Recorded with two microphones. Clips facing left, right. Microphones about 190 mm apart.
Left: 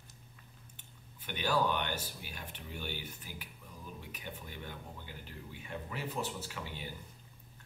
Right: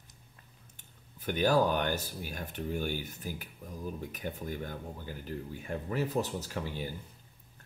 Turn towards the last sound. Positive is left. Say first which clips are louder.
# right 7 dB
turn(degrees=-40)  # may be behind; listen again after turning